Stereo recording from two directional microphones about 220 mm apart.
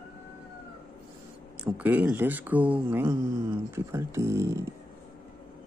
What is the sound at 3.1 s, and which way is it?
Cat, 20° right (ahead or behind).